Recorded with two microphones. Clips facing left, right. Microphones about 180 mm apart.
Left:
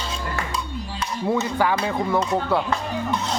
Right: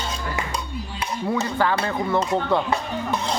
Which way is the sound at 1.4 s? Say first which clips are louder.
Left 1 dB; 10° left (ahead or behind).